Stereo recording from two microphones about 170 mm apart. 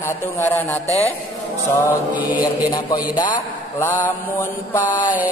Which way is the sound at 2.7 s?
25° left (ahead or behind).